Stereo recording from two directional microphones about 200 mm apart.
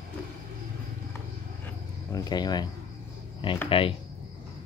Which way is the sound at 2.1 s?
20° left (ahead or behind).